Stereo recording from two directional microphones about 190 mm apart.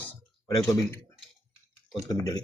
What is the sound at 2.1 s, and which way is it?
Speech, 20° left (ahead or behind).